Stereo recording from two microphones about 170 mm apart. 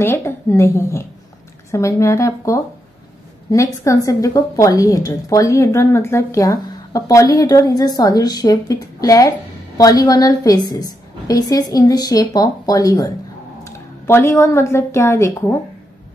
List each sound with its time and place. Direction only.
0.0 s a woman's voice: 15° left (ahead or behind)